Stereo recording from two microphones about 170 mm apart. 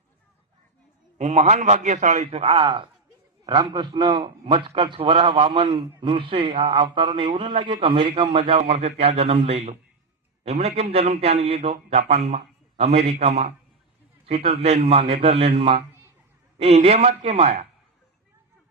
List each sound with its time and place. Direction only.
1.2 s a man's voice: 40° right (ahead or behind)